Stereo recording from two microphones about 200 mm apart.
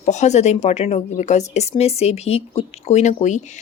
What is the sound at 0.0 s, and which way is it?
Speech, 35° left (ahead or behind).